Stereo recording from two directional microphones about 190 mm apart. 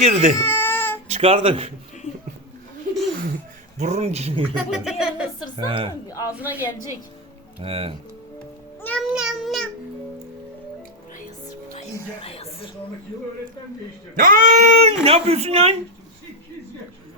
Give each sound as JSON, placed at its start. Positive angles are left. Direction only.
{"t": 0.0, "sound": "speech", "side_deg": -35}
{"t": 0.4, "sound": "baby cry", "side_deg": 10}
{"t": 1.0, "sound": "speech", "side_deg": -35}
{"t": 3.8, "sound": "speech", "side_deg": -35}
{"t": 4.5, "sound": "speech", "side_deg": -5}
{"t": 5.5, "sound": "speech", "side_deg": -30}
{"t": 5.9, "sound": "speech", "side_deg": 20}
{"t": 6.3, "sound": "a woman's voice", "side_deg": -10}
{"t": 7.6, "sound": "speech", "side_deg": -30}
{"t": 8.8, "sound": "music", "side_deg": 10}
{"t": 9.0, "sound": "a child's voice", "side_deg": -5}
{"t": 12.2, "sound": "a sound", "side_deg": 30}
{"t": 14.2, "sound": "speech", "side_deg": -45}